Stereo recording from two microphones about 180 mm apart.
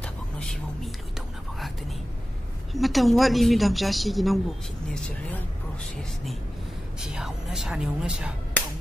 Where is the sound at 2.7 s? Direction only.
Centre (ahead or behind).